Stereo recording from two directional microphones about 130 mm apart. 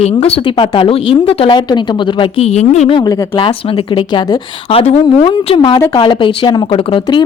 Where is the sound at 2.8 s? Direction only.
35° left (ahead or behind).